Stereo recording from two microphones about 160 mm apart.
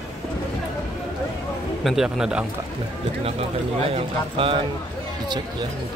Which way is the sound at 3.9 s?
35° right (ahead or behind).